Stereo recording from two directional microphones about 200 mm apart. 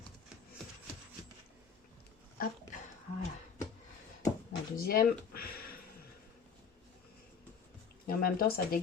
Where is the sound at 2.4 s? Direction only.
45° left (ahead or behind).